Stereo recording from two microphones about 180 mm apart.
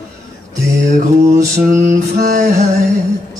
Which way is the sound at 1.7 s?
45° right (ahead or behind).